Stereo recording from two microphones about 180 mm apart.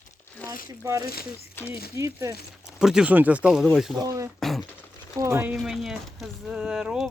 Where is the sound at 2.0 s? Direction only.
15° right (ahead or behind).